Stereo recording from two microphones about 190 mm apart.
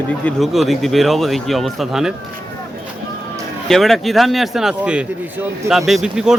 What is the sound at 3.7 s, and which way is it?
Speech, centre (ahead or behind).